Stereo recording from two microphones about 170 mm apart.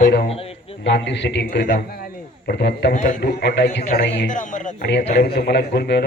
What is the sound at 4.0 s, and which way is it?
Speech, 90° left.